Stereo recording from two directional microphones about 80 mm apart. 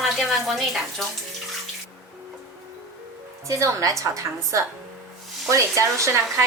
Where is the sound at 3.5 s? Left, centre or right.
Right.